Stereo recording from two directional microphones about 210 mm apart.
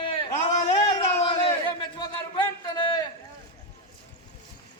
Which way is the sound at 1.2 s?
25° left (ahead or behind).